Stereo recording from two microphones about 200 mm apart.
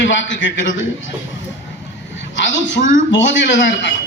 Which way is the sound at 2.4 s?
65° left (ahead or behind).